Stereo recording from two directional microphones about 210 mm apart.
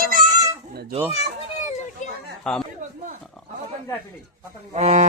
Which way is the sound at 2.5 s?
5° left (ahead or behind).